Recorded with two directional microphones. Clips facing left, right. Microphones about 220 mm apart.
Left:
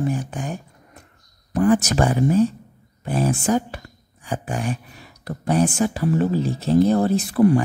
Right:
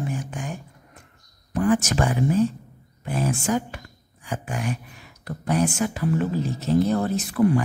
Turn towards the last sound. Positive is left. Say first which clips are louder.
# left 4 dB
turn(degrees=30)  # may be behind; listen again after turning